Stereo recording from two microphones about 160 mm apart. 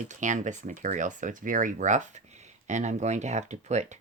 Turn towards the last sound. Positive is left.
turn(degrees=-45)  # may be behind; listen again after turning